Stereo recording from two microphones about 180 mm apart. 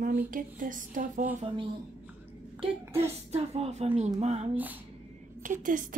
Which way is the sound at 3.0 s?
35° right (ahead or behind).